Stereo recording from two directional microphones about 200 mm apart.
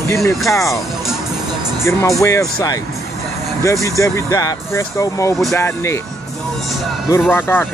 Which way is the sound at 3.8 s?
15° left (ahead or behind).